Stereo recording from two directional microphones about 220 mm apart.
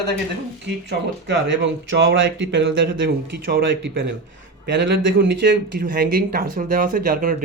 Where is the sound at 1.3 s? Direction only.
55° right (ahead or behind).